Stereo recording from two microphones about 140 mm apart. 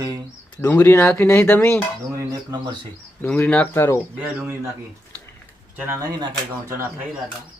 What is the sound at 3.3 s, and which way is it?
Speech, 10° left (ahead or behind).